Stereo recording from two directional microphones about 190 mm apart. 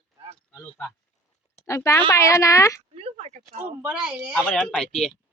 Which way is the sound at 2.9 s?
35° right (ahead or behind).